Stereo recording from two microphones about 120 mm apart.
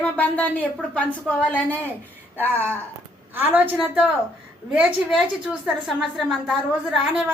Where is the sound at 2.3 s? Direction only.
15° right (ahead or behind).